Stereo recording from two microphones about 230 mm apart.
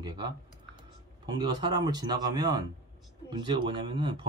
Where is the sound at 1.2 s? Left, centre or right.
Centre.